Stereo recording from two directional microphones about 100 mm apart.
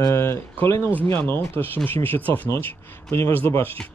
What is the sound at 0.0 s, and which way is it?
Speech, 25° left (ahead or behind).